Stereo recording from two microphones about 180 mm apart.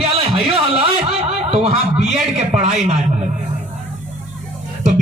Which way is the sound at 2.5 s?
40° right (ahead or behind).